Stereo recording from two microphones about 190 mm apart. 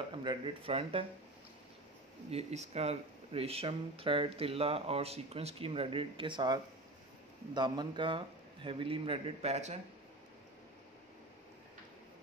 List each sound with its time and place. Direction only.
0.1 s a man's voice: 25° right (ahead or behind)
2.3 s a man's voice: 35° right (ahead or behind)